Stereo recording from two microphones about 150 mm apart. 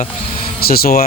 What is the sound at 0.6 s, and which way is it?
Speech, 90° left.